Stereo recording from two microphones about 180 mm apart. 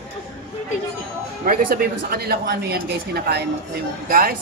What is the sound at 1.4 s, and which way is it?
A woman's voice, 50° right (ahead or behind).